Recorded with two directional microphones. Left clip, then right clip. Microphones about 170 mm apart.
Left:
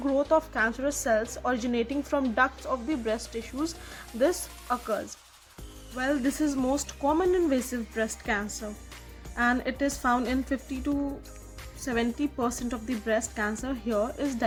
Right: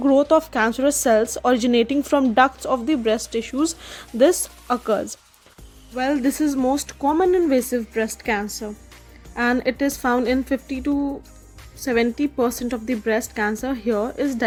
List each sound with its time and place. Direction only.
0.0 s a woman's voice: 45° right (ahead or behind)
6.0 s speech: 25° right (ahead or behind)